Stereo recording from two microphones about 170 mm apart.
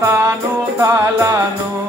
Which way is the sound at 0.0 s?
15° right (ahead or behind).